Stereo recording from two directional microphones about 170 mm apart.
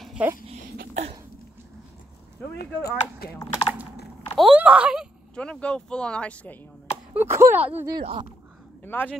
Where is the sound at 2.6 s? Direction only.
70° left (ahead or behind).